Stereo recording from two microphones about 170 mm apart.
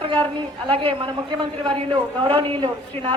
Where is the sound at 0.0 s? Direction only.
30° right (ahead or behind).